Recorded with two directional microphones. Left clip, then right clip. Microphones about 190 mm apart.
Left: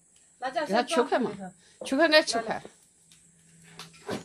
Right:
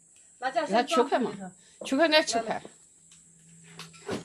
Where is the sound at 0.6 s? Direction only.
25° left (ahead or behind).